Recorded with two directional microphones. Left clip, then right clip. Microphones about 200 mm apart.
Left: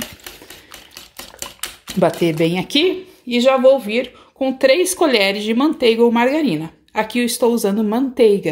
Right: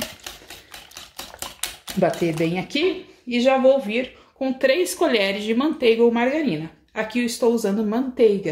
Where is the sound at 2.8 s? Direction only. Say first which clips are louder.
Left 3 dB; centre (ahead or behind).